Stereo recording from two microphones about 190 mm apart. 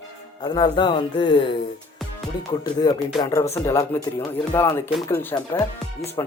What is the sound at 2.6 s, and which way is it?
Speech, 20° left (ahead or behind).